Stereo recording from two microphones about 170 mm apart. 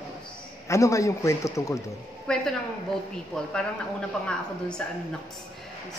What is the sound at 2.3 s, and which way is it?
Speech, 5° left (ahead or behind).